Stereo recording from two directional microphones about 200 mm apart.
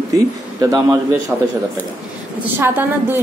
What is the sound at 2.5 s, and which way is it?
Speech, 10° right (ahead or behind).